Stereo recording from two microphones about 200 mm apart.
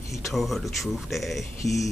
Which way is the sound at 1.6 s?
15° left (ahead or behind).